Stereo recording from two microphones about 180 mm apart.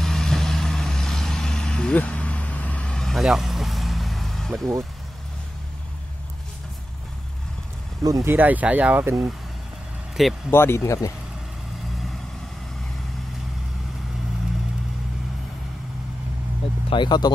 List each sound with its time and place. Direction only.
0.0 s vehicle: centre (ahead or behind)
8.0 s speech: 20° right (ahead or behind)
10.2 s speech: centre (ahead or behind)
10.5 s speech: 15° left (ahead or behind)
16.9 s speech: 25° left (ahead or behind)